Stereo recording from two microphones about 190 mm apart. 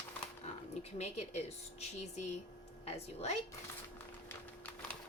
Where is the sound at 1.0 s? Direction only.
35° left (ahead or behind).